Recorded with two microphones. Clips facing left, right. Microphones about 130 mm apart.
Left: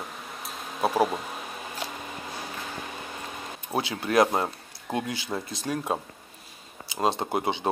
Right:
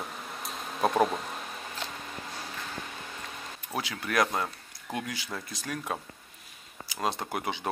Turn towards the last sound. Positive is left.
turn(degrees=25)  # may be behind; listen again after turning